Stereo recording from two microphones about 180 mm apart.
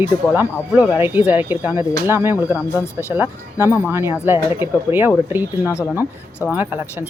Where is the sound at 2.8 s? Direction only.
15° left (ahead or behind).